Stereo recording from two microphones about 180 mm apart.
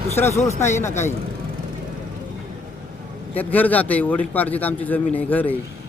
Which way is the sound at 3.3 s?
10° left (ahead or behind).